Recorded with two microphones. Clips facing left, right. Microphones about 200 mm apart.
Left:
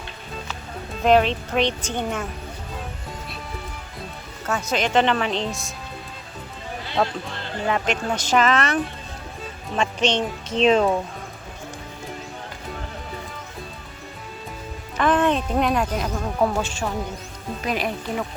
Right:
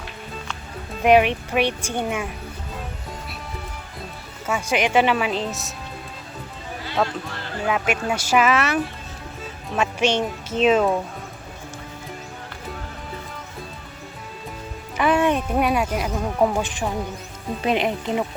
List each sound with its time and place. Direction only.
1.0 s speech: 15° right (ahead or behind)
4.4 s speech: 10° right (ahead or behind)
6.9 s speech: 20° left (ahead or behind)
7.7 s speech: 10° right (ahead or behind)
14.9 s speech: 10° right (ahead or behind)